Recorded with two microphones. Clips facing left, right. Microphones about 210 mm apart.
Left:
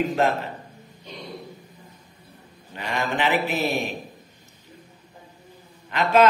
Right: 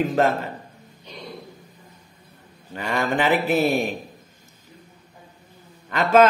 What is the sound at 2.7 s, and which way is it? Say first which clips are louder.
Speech: right 3 dB; 45° right (ahead or behind).